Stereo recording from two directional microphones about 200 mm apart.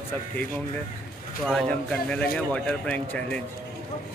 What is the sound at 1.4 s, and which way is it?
A man's voice, centre (ahead or behind).